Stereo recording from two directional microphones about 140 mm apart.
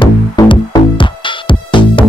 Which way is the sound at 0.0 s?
35° left (ahead or behind).